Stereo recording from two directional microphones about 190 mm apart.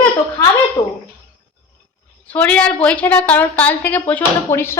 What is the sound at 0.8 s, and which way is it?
Speech, 30° left (ahead or behind).